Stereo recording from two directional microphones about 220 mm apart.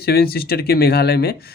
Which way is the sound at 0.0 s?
45° left (ahead or behind).